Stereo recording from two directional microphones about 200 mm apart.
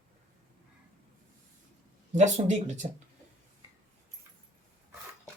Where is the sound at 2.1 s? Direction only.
35° right (ahead or behind).